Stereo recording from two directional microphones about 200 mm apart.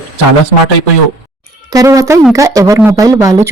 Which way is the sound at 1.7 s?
15° right (ahead or behind).